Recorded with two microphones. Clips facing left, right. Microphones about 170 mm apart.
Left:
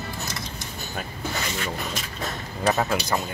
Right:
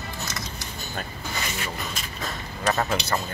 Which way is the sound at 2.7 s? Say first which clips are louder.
Left 2 dB; 10° left (ahead or behind).